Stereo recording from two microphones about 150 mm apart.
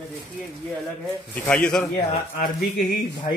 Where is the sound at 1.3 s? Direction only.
10° left (ahead or behind).